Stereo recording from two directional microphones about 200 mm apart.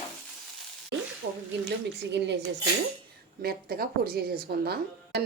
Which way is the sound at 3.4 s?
50° right (ahead or behind).